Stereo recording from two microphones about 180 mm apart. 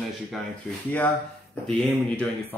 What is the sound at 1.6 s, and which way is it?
Speech, 5° left (ahead or behind).